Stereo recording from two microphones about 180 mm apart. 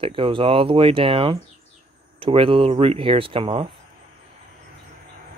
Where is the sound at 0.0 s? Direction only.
30° right (ahead or behind).